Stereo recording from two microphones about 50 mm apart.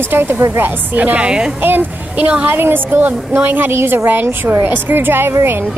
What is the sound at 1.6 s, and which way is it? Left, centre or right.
A woman's voice, right.